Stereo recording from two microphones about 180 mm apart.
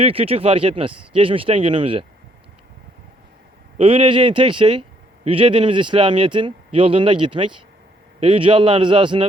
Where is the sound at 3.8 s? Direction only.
30° right (ahead or behind).